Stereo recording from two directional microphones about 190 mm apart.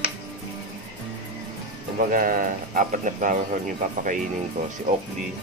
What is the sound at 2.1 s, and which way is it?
Speech, 45° right (ahead or behind).